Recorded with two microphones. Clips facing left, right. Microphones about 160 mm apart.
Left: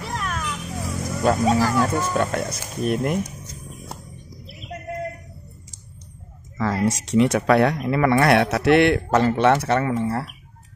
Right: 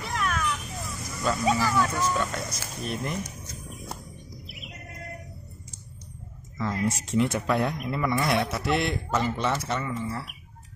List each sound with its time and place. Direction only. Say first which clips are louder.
0.1 s children playing: right 1 dB; 35° left (ahead or behind)
0.7 s vehicle: left 9 dB; 60° left (ahead or behind)
1.7 s speech: left 4 dB; 45° left (ahead or behind)
2.3 s speech: left 8 dB; 55° left (ahead or behind)
6.6 s speech: left 6 dB; 85° left; by 10.2 s 65° left (ahead or behind)